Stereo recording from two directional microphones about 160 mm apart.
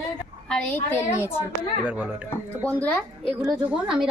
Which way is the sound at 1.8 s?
10° right (ahead or behind).